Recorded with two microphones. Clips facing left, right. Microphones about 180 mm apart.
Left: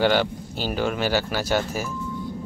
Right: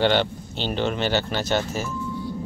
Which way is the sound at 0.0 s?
5° left (ahead or behind).